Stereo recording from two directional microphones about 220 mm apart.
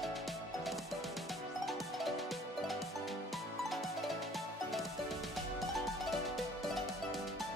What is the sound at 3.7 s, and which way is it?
Music, centre (ahead or behind).